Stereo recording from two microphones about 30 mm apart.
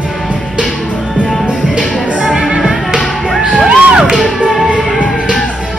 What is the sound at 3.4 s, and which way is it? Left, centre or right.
Crowd, right.